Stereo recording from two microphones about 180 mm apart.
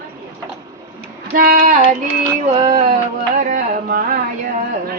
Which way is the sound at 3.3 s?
45° right (ahead or behind).